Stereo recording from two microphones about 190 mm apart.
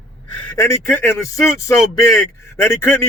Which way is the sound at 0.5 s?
15° left (ahead or behind).